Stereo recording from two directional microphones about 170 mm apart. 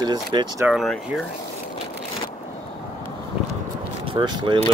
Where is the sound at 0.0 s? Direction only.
25° right (ahead or behind).